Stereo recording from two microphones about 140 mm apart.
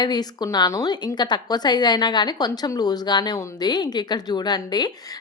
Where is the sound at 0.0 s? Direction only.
30° left (ahead or behind).